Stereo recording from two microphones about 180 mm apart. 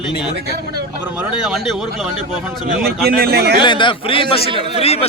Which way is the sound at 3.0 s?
60° right (ahead or behind).